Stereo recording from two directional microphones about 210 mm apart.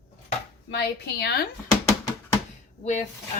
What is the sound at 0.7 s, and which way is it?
Speech, 50° left (ahead or behind).